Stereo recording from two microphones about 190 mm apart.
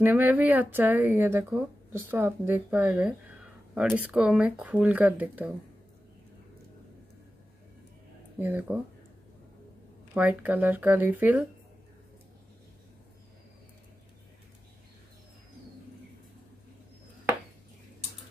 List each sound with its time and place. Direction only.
0.0 s speech: 10° right (ahead or behind)
8.4 s speech: 10° right (ahead or behind)
10.1 s speech: 10° right (ahead or behind)